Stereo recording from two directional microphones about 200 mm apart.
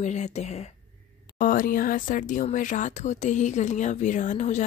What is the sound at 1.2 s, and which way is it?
Speech, 45° left (ahead or behind).